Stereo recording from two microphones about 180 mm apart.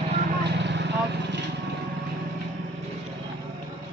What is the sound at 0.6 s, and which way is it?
Vehicle, 75° right (ahead or behind).